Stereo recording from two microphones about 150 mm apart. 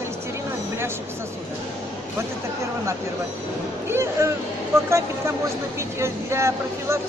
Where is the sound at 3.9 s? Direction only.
20° right (ahead or behind).